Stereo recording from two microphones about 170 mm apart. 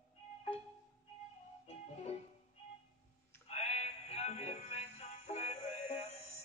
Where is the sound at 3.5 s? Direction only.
40° left (ahead or behind).